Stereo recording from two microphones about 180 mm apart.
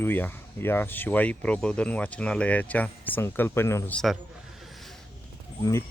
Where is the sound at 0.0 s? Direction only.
10° left (ahead or behind).